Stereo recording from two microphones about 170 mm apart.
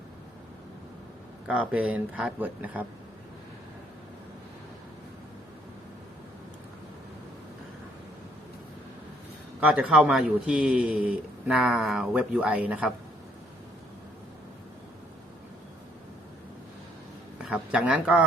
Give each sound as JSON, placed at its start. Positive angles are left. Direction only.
{"t": 1.5, "sound": "a man's voice", "side_deg": -10}
{"t": 9.6, "sound": "a man's voice", "side_deg": -10}
{"t": 17.3, "sound": "speech", "side_deg": -5}